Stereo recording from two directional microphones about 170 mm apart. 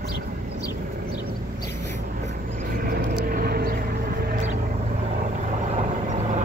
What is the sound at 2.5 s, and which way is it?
Vehicle, 55° right (ahead or behind).